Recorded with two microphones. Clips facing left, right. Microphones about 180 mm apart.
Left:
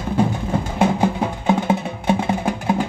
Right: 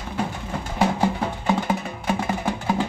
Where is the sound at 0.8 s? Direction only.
20° left (ahead or behind).